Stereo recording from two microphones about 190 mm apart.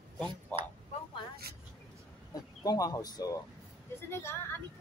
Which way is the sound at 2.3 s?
20° left (ahead or behind).